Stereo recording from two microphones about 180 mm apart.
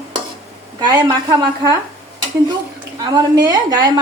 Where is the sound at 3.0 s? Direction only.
20° right (ahead or behind).